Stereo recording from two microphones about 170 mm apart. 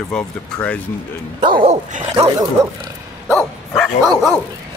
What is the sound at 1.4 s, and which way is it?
Speech, 30° right (ahead or behind).